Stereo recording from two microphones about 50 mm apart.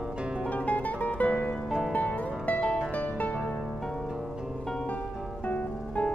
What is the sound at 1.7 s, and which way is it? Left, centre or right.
Music, centre.